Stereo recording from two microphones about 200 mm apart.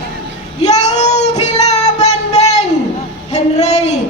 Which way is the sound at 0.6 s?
35° left (ahead or behind).